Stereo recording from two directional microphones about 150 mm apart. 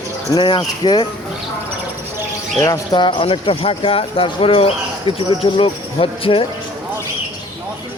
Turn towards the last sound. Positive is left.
turn(degrees=35)  # may be behind; listen again after turning